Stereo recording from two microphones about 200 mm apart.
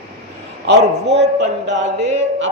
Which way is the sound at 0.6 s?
60° right (ahead or behind).